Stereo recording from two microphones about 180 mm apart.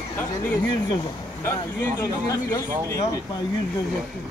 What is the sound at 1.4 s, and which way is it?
Speech, 15° left (ahead or behind).